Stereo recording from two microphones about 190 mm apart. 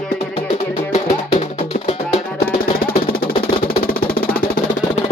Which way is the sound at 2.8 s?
50° left (ahead or behind).